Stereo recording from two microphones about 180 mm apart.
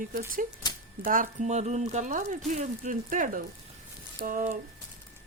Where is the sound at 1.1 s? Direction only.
45° right (ahead or behind).